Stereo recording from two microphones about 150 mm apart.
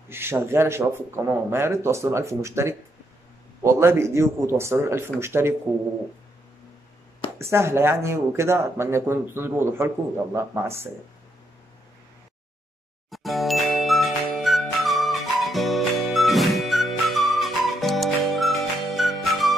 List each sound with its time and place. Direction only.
0.1 s speech: 15° right (ahead or behind)
7.3 s speech: 15° right (ahead or behind)
13.1 s music: centre (ahead or behind)